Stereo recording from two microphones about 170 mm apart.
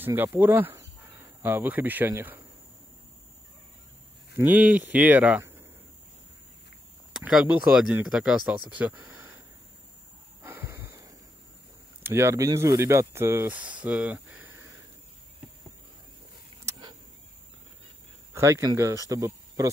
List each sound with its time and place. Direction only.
0.0 s speech: 10° right (ahead or behind)
4.4 s speech: 10° right (ahead or behind)
7.2 s speech: 5° right (ahead or behind)
10.4 s a sound: 15° right (ahead or behind)
12.0 s speech: 15° right (ahead or behind)
18.3 s speech: 15° right (ahead or behind)